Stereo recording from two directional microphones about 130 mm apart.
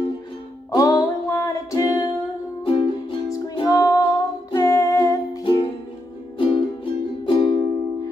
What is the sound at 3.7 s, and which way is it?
Music, 25° left (ahead or behind).